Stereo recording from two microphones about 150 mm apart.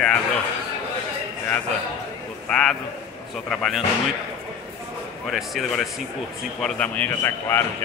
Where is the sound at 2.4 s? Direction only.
5° left (ahead or behind).